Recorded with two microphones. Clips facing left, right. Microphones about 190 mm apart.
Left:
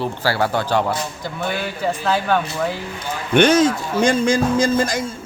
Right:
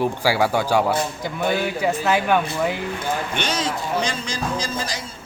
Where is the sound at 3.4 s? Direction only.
50° left (ahead or behind).